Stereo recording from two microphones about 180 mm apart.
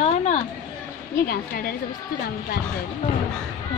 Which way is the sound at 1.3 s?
55° left (ahead or behind).